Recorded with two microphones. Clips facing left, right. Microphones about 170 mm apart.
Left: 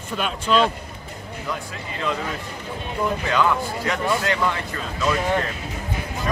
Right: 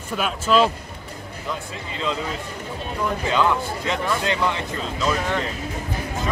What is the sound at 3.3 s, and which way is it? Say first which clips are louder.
Speech: right 2 dB; 20° right (ahead or behind).